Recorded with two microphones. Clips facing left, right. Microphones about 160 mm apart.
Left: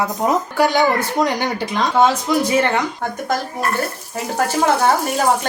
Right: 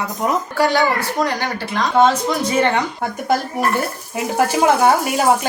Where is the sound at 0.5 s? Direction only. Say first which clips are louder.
Even; 20° left (ahead or behind).